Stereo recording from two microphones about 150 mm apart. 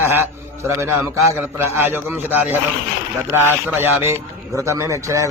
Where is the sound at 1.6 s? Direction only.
15° right (ahead or behind).